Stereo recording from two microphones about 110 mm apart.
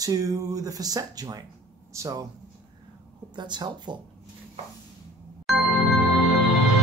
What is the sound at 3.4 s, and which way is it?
Speech, 45° right (ahead or behind).